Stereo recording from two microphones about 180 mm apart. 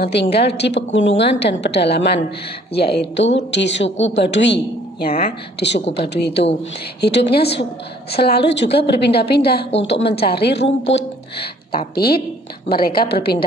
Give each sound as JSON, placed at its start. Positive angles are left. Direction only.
{"t": 0.0, "sound": "a woman's voice", "side_deg": 65}
{"t": 1.4, "sound": "a woman's voice", "side_deg": 70}
{"t": 9.8, "sound": "a woman's voice", "side_deg": 75}
{"t": 11.9, "sound": "a woman's voice", "side_deg": 60}